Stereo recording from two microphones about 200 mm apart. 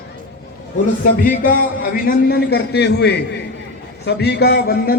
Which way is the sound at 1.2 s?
40° left (ahead or behind).